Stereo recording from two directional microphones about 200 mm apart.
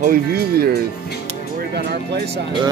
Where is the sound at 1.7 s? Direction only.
55° right (ahead or behind).